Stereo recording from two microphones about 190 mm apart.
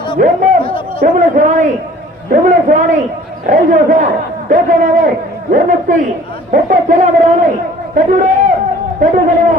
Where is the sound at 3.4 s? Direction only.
40° right (ahead or behind).